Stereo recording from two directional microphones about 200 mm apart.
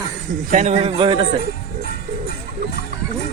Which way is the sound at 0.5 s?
35° right (ahead or behind).